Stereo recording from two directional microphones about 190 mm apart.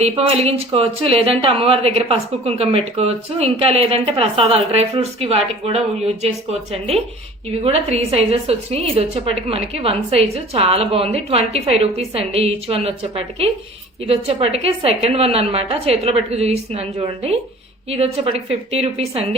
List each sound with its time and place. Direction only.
0.0 s speech: 35° right (ahead or behind)